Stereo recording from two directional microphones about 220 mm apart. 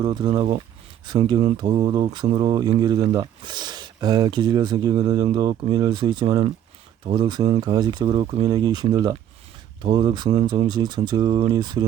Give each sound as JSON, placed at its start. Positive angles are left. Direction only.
{"t": 0.0, "sound": "speech", "side_deg": -20}